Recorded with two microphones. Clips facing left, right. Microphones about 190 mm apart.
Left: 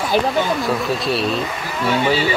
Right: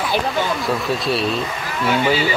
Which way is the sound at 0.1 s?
40° left (ahead or behind).